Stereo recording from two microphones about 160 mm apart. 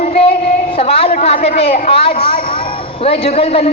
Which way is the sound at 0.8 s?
35° left (ahead or behind).